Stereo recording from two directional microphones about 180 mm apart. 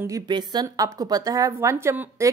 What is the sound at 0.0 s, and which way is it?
A woman's voice, 20° right (ahead or behind).